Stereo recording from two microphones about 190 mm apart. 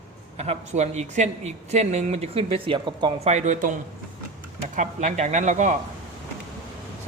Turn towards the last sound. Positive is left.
turn(degrees=-40)  # may be behind; listen again after turning